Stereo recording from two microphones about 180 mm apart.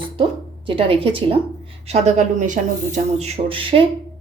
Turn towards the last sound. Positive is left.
turn(degrees=-30)  # may be behind; listen again after turning